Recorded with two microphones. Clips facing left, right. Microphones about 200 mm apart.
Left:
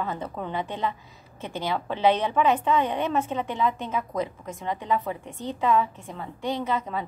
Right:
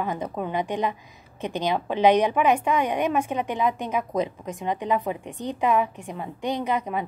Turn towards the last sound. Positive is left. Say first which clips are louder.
# right 2 dB
turn(degrees=-15)  # may be behind; listen again after turning